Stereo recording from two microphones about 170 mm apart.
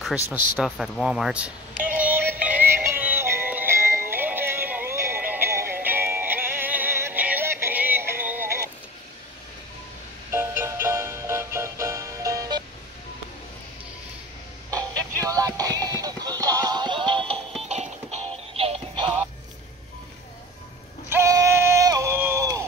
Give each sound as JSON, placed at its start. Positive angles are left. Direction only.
{"t": 0.7, "sound": "speech", "side_deg": 0}
{"t": 1.9, "sound": "music", "side_deg": -10}
{"t": 10.3, "sound": "music", "side_deg": -15}
{"t": 15.2, "sound": "music", "side_deg": -20}
{"t": 17.6, "sound": "music", "side_deg": -40}
{"t": 18.5, "sound": "synthetic singing", "side_deg": -35}
{"t": 21.1, "sound": "a sound", "side_deg": -15}